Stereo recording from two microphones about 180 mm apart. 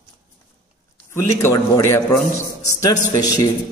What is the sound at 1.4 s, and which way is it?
A man's voice, 15° left (ahead or behind).